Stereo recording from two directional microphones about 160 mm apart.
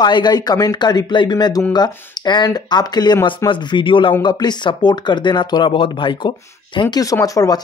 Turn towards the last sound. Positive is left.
turn(degrees=20)  # may be behind; listen again after turning